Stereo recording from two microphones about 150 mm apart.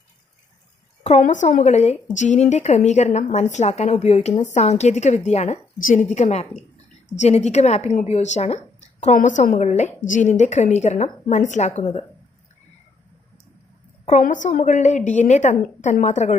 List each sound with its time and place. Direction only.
1.0 s a woman's voice: 50° left (ahead or behind)
5.8 s a woman's voice: 65° left (ahead or behind)
6.1 s a woman's voice: 50° left (ahead or behind)
14.2 s a woman's voice: 55° left (ahead or behind)